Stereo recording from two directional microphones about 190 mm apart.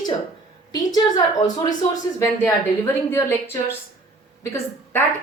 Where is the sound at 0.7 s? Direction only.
20° left (ahead or behind).